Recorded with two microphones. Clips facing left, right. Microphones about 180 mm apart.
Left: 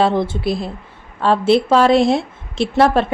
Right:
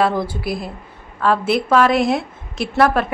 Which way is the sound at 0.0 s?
25° left (ahead or behind).